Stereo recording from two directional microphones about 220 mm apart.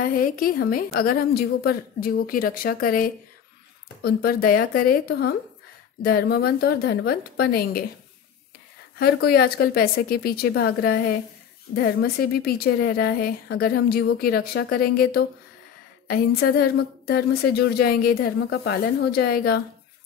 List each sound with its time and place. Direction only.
0.0 s a woman's voice: 40° left (ahead or behind)
8.9 s speech: 45° left (ahead or behind)